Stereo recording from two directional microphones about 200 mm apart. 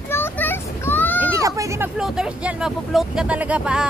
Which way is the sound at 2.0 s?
5° right (ahead or behind).